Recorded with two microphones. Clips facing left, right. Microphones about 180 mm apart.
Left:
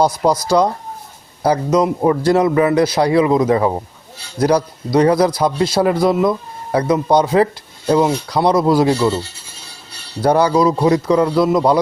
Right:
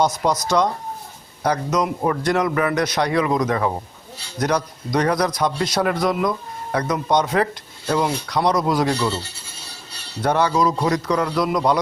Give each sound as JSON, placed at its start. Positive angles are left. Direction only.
{"t": 0.0, "sound": "a man's voice", "side_deg": 30}
{"t": 10.2, "sound": "a man's voice", "side_deg": 35}